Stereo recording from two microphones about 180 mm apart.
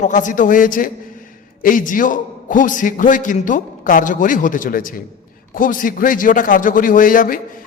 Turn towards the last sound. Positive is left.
turn(degrees=50)  # may be behind; listen again after turning